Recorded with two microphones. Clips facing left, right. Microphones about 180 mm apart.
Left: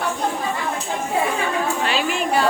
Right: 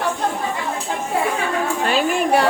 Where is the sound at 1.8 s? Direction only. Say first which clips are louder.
Right 4 dB; 50° right (ahead or behind).